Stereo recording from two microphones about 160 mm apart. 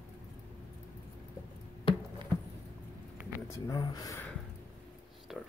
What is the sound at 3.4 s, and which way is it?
Speech, 20° left (ahead or behind).